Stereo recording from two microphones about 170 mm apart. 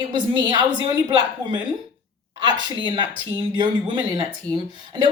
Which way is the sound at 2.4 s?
25° right (ahead or behind).